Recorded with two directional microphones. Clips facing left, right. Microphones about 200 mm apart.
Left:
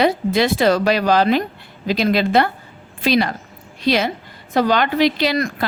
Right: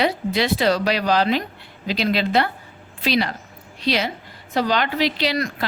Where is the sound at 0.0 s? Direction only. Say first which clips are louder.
Left 4 dB; 50° left (ahead or behind).